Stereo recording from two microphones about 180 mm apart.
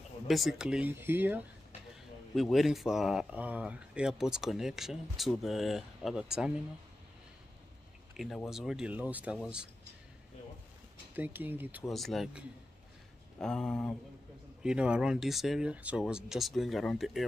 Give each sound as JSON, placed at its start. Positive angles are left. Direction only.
{"t": 0.3, "sound": "speech", "side_deg": 0}
{"t": 8.5, "sound": "speech", "side_deg": 0}
{"t": 11.1, "sound": "speech", "side_deg": -10}
{"t": 11.9, "sound": "speech", "side_deg": 0}